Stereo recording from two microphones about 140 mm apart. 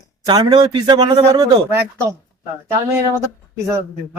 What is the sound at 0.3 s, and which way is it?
A man's voice, 30° right (ahead or behind).